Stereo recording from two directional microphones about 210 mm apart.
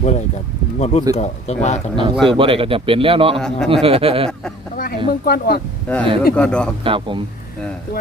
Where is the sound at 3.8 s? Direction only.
25° right (ahead or behind).